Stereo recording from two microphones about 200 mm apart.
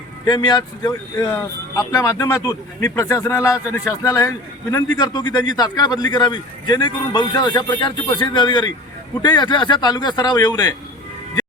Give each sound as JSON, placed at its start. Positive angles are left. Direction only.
{"t": 0.3, "sound": "a man's voice", "side_deg": 20}